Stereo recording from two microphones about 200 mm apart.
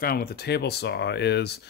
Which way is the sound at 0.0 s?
50° left (ahead or behind).